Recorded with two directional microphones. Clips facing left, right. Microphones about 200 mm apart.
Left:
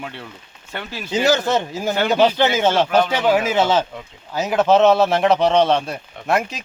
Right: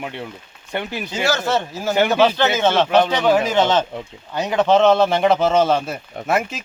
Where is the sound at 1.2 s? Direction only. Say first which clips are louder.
Left 2 dB; 15° left (ahead or behind); by 6.6 s centre (ahead or behind).